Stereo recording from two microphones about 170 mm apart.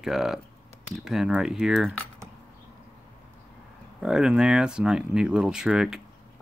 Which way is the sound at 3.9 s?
5° right (ahead or behind).